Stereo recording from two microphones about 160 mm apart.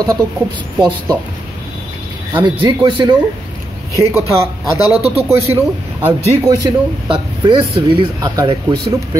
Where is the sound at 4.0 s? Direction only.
15° right (ahead or behind).